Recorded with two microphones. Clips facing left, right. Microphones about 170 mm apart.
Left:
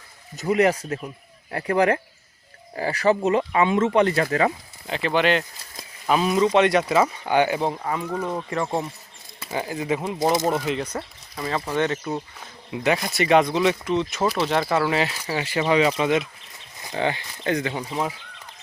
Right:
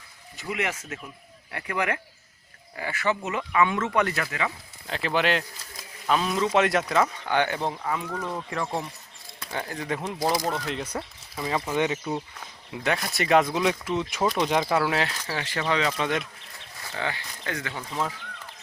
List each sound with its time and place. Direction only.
0.3 s speech: 40° left (ahead or behind)
4.9 s speech: centre (ahead or behind)
8.1 s speech: 25° left (ahead or behind)
9.4 s speech: 5° left (ahead or behind)
10.2 s speech: 25° left (ahead or behind)
10.7 s speech: centre (ahead or behind)
11.7 s speech: 10° right (ahead or behind)
12.1 s speech: 5° left (ahead or behind); by 14.7 s 10° right (ahead or behind)
14.7 s speech: centre (ahead or behind)
16.7 s speech: 20° left (ahead or behind)